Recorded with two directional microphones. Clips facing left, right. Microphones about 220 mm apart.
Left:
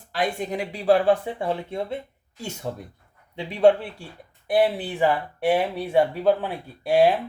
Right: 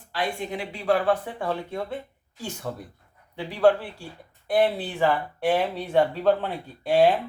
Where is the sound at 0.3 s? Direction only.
40° left (ahead or behind); by 3.8 s 20° left (ahead or behind).